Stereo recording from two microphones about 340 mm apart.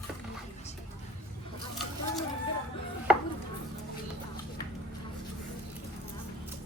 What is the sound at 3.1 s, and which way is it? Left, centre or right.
Chopping, centre.